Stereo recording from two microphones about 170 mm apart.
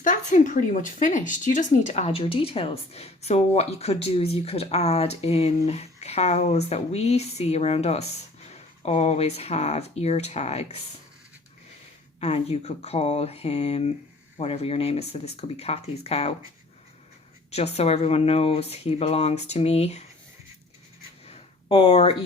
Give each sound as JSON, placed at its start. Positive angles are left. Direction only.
{"t": 0.0, "sound": "speech", "side_deg": 50}
{"t": 12.2, "sound": "speech", "side_deg": 40}
{"t": 17.5, "sound": "speech", "side_deg": 40}
{"t": 21.2, "sound": "a sound", "side_deg": 35}